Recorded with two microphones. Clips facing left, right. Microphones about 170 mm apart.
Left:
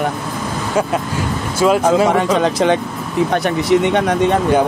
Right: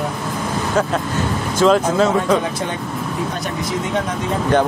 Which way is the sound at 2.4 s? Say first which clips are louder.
Left 9 dB; 90° left.